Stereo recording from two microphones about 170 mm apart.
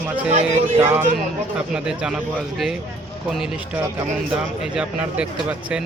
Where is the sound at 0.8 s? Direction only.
15° right (ahead or behind).